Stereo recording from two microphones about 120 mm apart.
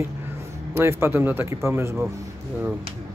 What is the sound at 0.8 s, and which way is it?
Speech, 20° right (ahead or behind).